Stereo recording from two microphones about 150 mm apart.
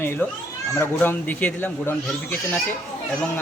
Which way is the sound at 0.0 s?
15° left (ahead or behind).